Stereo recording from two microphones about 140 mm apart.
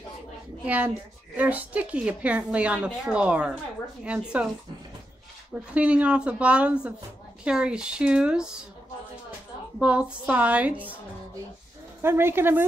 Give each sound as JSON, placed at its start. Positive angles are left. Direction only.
{"t": 0.7, "sound": "a woman's voice", "side_deg": -10}
{"t": 5.5, "sound": "a woman's voice", "side_deg": -10}
{"t": 9.8, "sound": "a woman's voice", "side_deg": -10}
{"t": 12.0, "sound": "a woman's voice", "side_deg": -15}